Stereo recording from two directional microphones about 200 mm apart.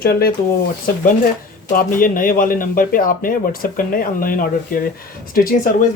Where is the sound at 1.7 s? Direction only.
45° left (ahead or behind).